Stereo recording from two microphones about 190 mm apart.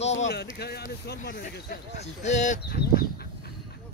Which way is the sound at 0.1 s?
65° left (ahead or behind).